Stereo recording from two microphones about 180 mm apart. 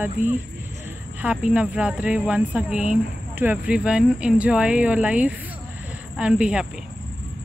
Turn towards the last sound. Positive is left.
turn(degrees=-5)  # may be behind; listen again after turning